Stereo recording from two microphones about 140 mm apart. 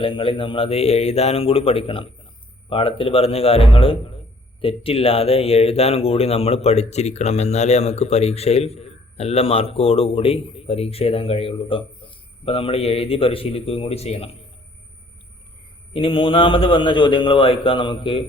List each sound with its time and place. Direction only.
0.0 s a man's voice: 40° left (ahead or behind)
15.9 s a man's voice: 40° left (ahead or behind)